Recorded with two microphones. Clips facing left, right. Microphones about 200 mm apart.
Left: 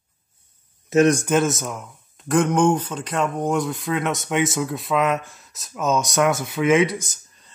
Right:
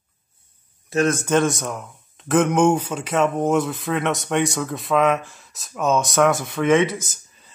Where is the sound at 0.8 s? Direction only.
20° left (ahead or behind).